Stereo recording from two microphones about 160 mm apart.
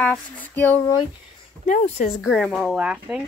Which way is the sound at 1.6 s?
45° left (ahead or behind).